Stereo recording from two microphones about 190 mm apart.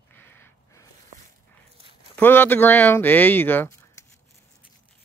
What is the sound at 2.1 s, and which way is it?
Speech, 10° left (ahead or behind).